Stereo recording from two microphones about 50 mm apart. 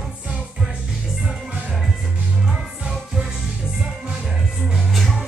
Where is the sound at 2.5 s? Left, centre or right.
Centre.